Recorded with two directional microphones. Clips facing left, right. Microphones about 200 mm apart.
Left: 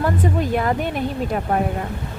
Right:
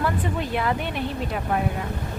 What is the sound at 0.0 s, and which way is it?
Speech, 45° left (ahead or behind).